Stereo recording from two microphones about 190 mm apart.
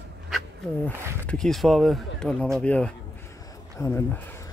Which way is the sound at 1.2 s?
5° left (ahead or behind).